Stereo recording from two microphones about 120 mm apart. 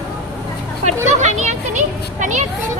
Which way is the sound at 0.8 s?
75° right (ahead or behind).